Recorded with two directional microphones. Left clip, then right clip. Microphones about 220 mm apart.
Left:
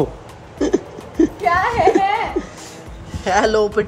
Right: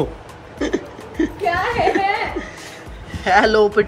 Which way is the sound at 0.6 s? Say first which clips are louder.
Left 4 dB; 15° left (ahead or behind).